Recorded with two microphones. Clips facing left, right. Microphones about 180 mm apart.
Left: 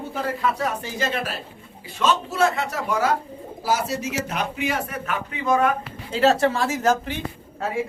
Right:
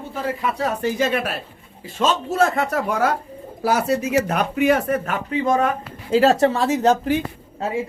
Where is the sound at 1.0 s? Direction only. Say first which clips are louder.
Right 3 dB; 60° right (ahead or behind).